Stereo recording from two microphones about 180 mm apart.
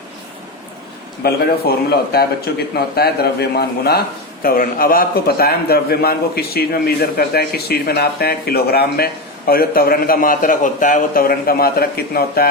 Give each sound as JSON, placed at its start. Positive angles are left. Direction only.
{"t": 1.2, "sound": "a man's voice", "side_deg": 60}